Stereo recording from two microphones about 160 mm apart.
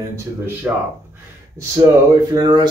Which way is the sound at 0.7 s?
10° right (ahead or behind).